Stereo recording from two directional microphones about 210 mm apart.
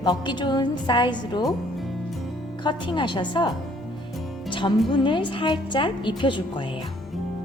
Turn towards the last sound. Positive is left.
turn(degrees=25)  # may be behind; listen again after turning